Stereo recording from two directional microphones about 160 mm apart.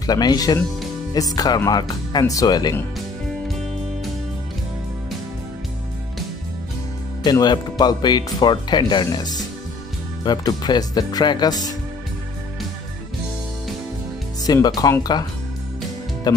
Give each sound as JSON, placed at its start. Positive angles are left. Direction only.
{"t": 0.0, "sound": "speech", "side_deg": 25}
{"t": 3.4, "sound": "music", "side_deg": 0}
{"t": 7.2, "sound": "speech", "side_deg": 25}
{"t": 14.4, "sound": "speech", "side_deg": 25}
{"t": 16.3, "sound": "speech", "side_deg": 25}